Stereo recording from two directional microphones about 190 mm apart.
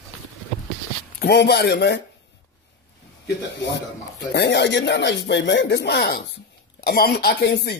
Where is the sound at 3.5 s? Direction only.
65° left (ahead or behind).